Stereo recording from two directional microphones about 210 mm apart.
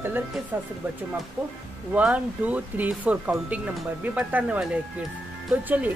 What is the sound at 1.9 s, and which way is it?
Speech, 5° right (ahead or behind).